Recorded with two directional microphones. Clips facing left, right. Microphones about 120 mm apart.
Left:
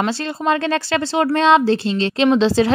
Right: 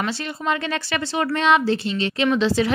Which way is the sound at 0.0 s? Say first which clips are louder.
Left 5 dB; 35° left (ahead or behind).